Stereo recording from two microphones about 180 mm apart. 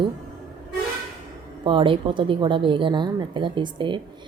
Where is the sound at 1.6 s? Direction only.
30° right (ahead or behind).